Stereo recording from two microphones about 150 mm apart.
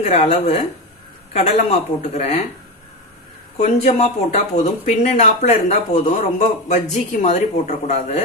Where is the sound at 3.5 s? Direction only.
50° left (ahead or behind).